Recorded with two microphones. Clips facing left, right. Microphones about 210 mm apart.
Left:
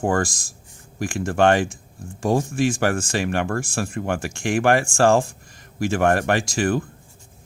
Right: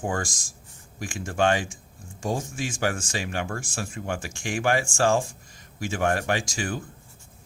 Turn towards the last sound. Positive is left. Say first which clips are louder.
# left 8 dB
turn(degrees=65)  # may be behind; listen again after turning